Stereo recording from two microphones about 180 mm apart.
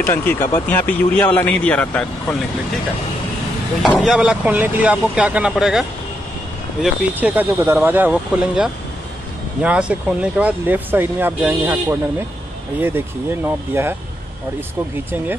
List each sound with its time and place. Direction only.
0.0 s speech: 10° left (ahead or behind)
3.8 s speech: centre (ahead or behind)